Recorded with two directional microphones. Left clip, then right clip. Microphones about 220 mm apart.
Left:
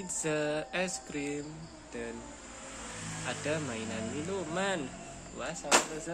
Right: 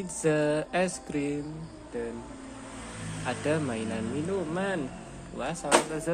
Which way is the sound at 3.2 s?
15° right (ahead or behind).